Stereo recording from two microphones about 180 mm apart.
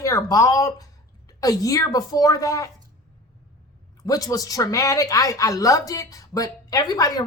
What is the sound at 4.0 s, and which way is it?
Speech, 20° left (ahead or behind).